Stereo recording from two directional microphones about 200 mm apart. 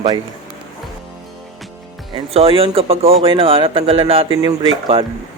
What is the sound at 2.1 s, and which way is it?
Speech, 30° right (ahead or behind).